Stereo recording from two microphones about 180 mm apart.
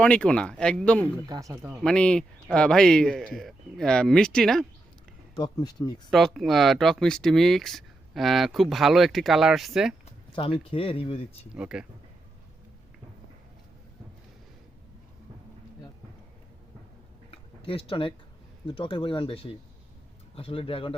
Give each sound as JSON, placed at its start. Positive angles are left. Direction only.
{"t": 0.0, "sound": "speech", "side_deg": 5}
{"t": 1.3, "sound": "speech", "side_deg": -20}
{"t": 1.8, "sound": "speech", "side_deg": 5}
{"t": 5.4, "sound": "speech", "side_deg": 20}
{"t": 6.1, "sound": "speech", "side_deg": 0}
{"t": 10.6, "sound": "speech", "side_deg": 30}
{"t": 11.5, "sound": "speech", "side_deg": -5}
{"t": 17.3, "sound": "a sound", "side_deg": 30}
{"t": 18.6, "sound": "speech", "side_deg": 30}